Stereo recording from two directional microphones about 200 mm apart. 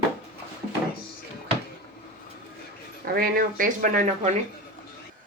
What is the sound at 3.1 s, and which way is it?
Speech, 45° right (ahead or behind).